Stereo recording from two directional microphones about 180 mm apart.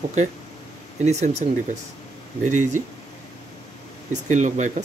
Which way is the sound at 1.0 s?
40° right (ahead or behind).